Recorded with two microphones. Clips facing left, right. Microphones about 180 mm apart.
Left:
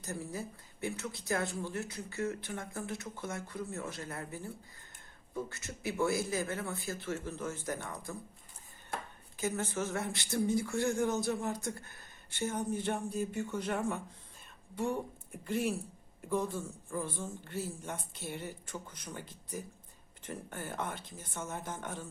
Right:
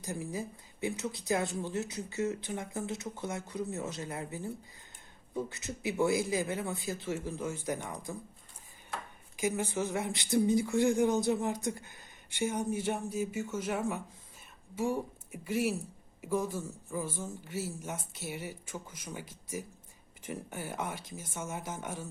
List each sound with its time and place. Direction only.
0.0 s speech: 15° right (ahead or behind)
9.3 s speech: 15° right (ahead or behind)